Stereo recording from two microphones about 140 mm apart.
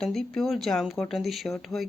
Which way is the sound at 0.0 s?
5° left (ahead or behind).